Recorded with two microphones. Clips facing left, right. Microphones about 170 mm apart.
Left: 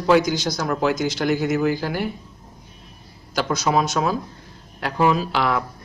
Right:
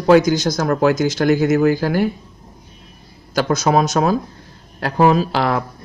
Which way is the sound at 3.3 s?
45° right (ahead or behind).